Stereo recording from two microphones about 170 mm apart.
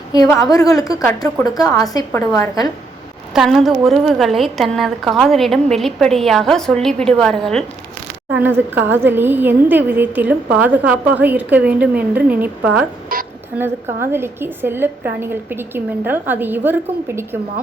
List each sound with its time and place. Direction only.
0.5 s a woman's voice: 20° left (ahead or behind)
3.3 s a woman's voice: centre (ahead or behind)
8.3 s a woman's voice: 10° right (ahead or behind)
13.1 s a sound: 55° right (ahead or behind)
13.6 s a woman's voice: 15° right (ahead or behind)